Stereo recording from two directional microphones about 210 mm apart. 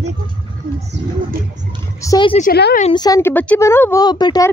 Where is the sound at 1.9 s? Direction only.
15° left (ahead or behind).